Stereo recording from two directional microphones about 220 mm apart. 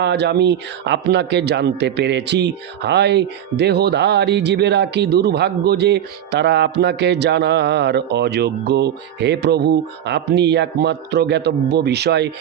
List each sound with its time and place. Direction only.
0.0 s a man's voice: 50° right (ahead or behind)